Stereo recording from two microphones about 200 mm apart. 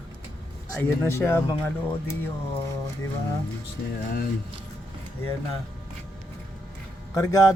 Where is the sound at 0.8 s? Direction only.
10° left (ahead or behind).